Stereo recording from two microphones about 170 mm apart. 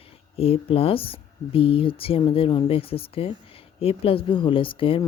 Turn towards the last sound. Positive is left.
turn(degrees=30)  # may be behind; listen again after turning